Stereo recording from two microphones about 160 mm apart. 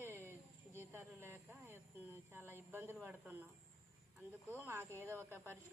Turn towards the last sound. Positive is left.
turn(degrees=-15)  # may be behind; listen again after turning